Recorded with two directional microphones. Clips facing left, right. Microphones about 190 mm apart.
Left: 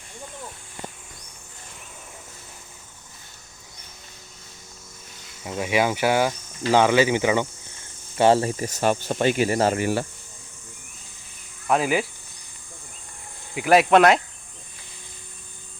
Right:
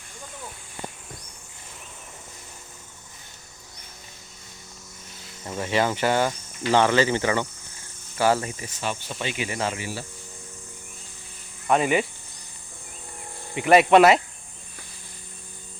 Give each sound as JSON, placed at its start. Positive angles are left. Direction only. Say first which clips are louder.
{"t": 5.4, "sound": "speech", "louder": "left 2 dB", "side_deg": 10}
{"t": 8.2, "sound": "speech", "louder": "left 4 dB", "side_deg": 30}
{"t": 8.5, "sound": "speech", "louder": "left 8 dB", "side_deg": 45}
{"t": 11.7, "sound": "speech", "louder": "even", "side_deg": 0}
{"t": 13.6, "sound": "speech", "louder": "right 1 dB", "side_deg": 0}